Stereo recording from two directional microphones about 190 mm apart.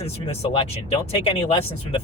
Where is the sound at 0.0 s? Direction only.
30° left (ahead or behind).